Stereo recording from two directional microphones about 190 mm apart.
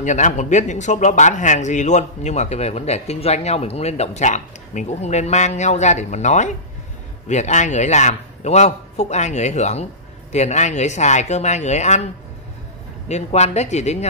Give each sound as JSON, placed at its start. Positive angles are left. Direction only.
{"t": 0.0, "sound": "speech", "side_deg": 40}
{"t": 13.1, "sound": "speech", "side_deg": 35}